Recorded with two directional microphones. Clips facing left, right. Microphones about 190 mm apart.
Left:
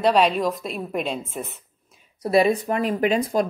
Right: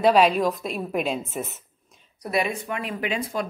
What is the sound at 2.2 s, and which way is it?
Speech, 35° left (ahead or behind).